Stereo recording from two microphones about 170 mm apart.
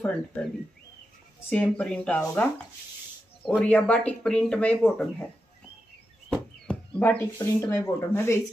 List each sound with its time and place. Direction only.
0.0 s speech: 10° left (ahead or behind)
1.5 s speech: 5° left (ahead or behind)
6.3 s a sound: 10° left (ahead or behind)
7.3 s speech: 20° left (ahead or behind)